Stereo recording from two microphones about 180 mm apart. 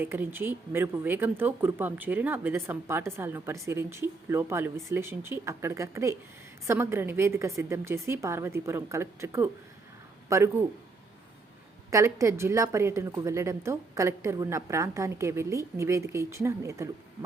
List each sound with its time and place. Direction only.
0.0 s speech: 10° right (ahead or behind)
11.9 s speech: 15° right (ahead or behind)